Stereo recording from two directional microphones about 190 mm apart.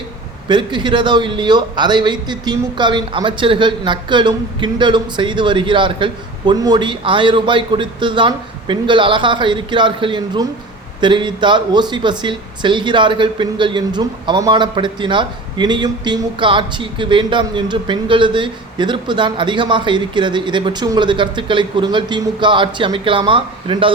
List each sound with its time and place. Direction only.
0.4 s speech: 25° right (ahead or behind)